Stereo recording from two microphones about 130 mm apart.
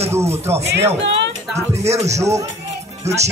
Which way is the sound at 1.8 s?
55° right (ahead or behind).